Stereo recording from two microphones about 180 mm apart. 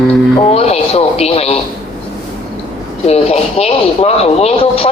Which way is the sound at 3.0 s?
35° left (ahead or behind).